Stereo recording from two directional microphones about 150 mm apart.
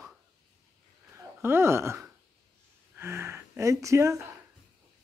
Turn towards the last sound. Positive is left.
turn(degrees=-20)  # may be behind; listen again after turning